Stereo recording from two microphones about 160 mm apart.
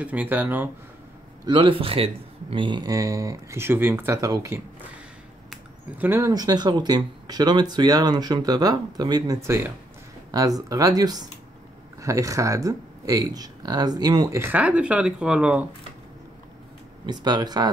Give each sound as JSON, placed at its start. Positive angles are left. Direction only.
{"t": 0.0, "sound": "speech", "side_deg": -10}
{"t": 1.4, "sound": "a man's voice", "side_deg": -30}
{"t": 14.4, "sound": "speech", "side_deg": -10}
{"t": 17.0, "sound": "speech", "side_deg": -25}